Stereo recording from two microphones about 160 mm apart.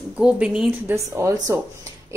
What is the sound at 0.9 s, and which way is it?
Speech, 20° right (ahead or behind).